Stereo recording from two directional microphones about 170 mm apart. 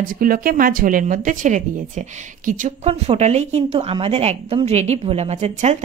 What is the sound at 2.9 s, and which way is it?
A woman's voice, 40° right (ahead or behind).